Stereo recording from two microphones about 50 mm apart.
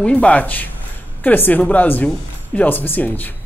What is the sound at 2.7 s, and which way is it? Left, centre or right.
Speech, left.